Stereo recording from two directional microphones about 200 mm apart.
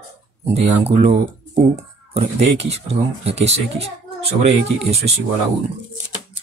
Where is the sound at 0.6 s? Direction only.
30° right (ahead or behind).